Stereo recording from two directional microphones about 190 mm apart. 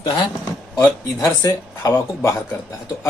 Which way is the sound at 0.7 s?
15° left (ahead or behind).